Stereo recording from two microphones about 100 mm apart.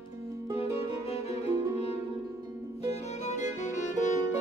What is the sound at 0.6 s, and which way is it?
Music, 90° left.